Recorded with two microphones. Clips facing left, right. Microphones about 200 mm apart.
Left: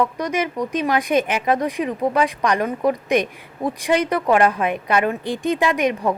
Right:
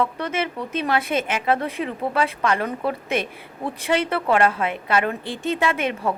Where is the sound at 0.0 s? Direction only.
15° left (ahead or behind).